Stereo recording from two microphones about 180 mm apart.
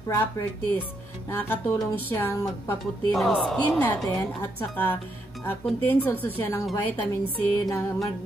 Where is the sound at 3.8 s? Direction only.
10° left (ahead or behind).